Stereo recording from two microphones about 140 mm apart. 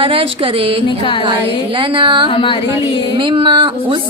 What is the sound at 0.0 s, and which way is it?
Speech, 40° right (ahead or behind).